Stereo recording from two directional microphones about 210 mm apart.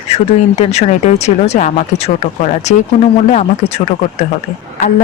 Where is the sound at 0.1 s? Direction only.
30° left (ahead or behind).